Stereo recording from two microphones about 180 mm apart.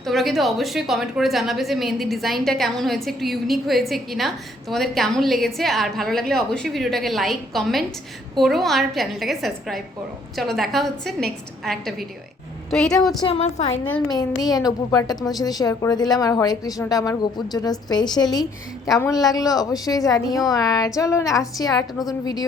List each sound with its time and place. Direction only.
0.0 s a woman's voice: centre (ahead or behind)
13.2 s a woman's voice: 35° left (ahead or behind)
14.1 s a woman's voice: 20° left (ahead or behind)